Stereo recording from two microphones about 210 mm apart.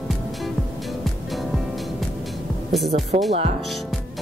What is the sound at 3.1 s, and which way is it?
Speech, 30° right (ahead or behind).